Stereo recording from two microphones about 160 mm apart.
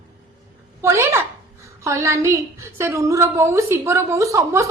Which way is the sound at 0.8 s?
15° right (ahead or behind).